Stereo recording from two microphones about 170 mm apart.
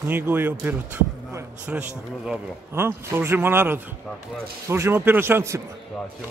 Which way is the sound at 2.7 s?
15° right (ahead or behind).